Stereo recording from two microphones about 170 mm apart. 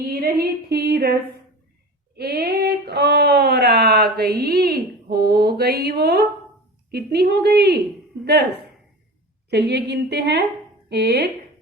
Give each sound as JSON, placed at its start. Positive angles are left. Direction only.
{"t": 0.0, "sound": "a woman's voice", "side_deg": -60}
{"t": 2.1, "sound": "speech", "side_deg": -70}
{"t": 9.5, "sound": "a woman's voice", "side_deg": -75}